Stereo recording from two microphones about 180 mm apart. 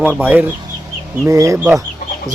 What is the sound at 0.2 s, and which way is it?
A man's voice, 10° right (ahead or behind).